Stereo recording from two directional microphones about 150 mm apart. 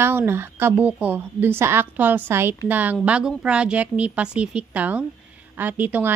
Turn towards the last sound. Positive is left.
turn(degrees=-10)  # may be behind; listen again after turning